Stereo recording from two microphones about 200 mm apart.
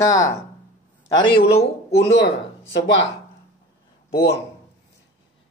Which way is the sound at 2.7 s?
65° left (ahead or behind).